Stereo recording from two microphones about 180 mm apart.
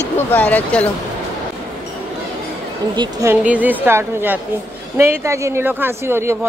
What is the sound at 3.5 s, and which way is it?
Speech, 10° right (ahead or behind).